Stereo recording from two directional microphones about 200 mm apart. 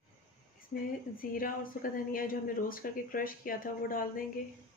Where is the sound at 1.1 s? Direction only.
45° left (ahead or behind).